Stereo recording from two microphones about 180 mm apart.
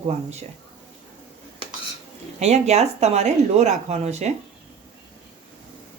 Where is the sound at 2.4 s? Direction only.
35° right (ahead or behind).